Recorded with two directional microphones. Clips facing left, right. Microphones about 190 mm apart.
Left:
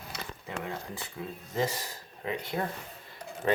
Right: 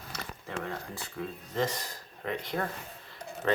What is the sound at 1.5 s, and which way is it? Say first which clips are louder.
Speech: even; 5° left (ahead or behind).